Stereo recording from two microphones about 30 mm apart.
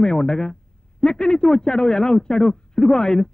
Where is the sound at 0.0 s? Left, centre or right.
Left.